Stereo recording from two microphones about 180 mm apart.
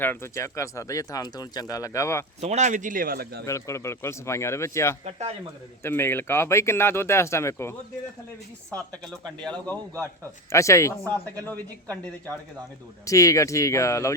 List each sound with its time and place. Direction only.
0.0 s speech: 10° left (ahead or behind)
2.4 s a man's voice: 40° right (ahead or behind); by 3.4 s 55° right (ahead or behind)
3.4 s speech: 15° left (ahead or behind)
9.2 s speech: 5° left (ahead or behind)
13.1 s speech: 20° left (ahead or behind)